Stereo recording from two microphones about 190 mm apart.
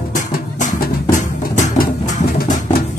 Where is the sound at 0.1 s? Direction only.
40° left (ahead or behind).